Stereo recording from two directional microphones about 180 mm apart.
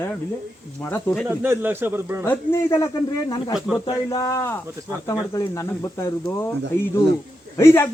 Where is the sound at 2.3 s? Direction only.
15° left (ahead or behind).